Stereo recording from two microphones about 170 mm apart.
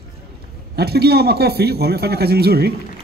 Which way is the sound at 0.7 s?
70° right (ahead or behind).